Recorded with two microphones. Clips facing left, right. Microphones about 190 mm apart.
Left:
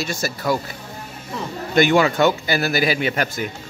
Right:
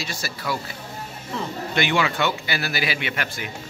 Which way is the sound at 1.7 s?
45° left (ahead or behind).